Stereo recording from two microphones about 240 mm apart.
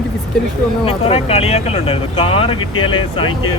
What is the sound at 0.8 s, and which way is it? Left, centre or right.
Speech, left.